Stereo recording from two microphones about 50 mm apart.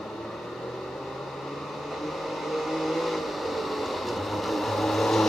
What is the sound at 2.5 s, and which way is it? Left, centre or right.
Vehicle, centre.